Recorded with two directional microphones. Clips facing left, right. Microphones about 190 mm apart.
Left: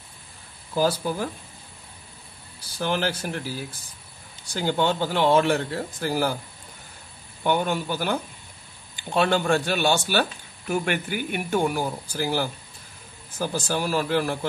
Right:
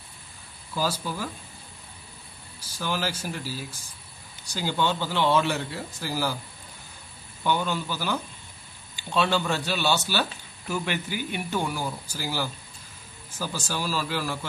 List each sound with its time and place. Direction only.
0.7 s speech: 55° left (ahead or behind)
2.8 s speech: 60° left (ahead or behind)
7.4 s speech: 55° left (ahead or behind)